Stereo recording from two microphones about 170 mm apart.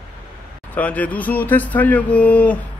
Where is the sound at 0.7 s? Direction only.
10° left (ahead or behind).